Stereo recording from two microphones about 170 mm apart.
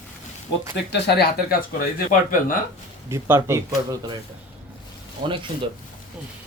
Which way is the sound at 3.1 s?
15° right (ahead or behind).